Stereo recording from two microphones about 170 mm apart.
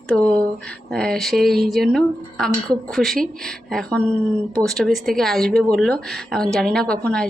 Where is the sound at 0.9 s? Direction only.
Centre (ahead or behind).